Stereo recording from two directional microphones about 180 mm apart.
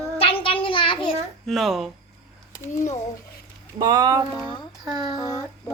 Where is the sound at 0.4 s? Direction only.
30° left (ahead or behind).